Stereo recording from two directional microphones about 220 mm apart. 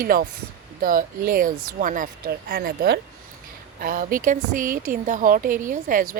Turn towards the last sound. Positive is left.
turn(degrees=-40)  # may be behind; listen again after turning